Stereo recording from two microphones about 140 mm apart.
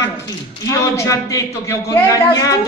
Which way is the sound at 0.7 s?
20° left (ahead or behind).